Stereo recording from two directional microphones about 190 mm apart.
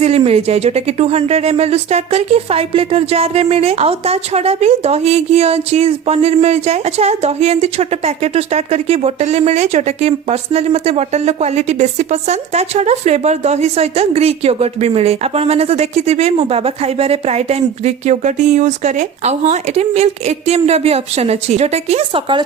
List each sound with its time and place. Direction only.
0.0 s speech: 30° right (ahead or behind)